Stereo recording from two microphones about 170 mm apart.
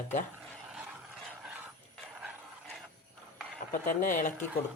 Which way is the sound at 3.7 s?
50° left (ahead or behind).